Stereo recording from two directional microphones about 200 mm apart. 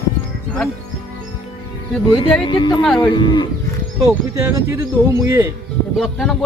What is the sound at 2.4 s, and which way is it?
Speech, 20° left (ahead or behind).